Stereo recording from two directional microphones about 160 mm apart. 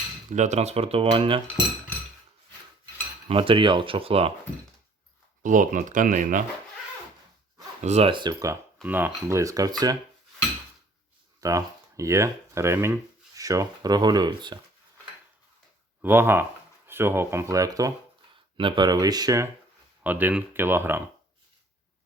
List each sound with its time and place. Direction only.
0.3 s speech: 45° right (ahead or behind)
3.2 s speech: 35° right (ahead or behind)
5.4 s speech: 55° right (ahead or behind)
7.8 s speech: 45° right (ahead or behind); by 8.5 s 25° right (ahead or behind)
8.8 s speech: 10° right (ahead or behind)
11.3 s speech: 20° right (ahead or behind)
16.0 s speech: 15° right (ahead or behind)
20.1 s speech: 10° right (ahead or behind)